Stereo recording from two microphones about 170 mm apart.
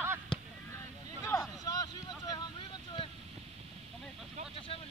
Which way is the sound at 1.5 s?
20° left (ahead or behind).